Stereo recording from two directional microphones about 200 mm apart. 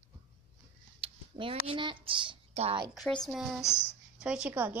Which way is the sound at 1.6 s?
25° right (ahead or behind).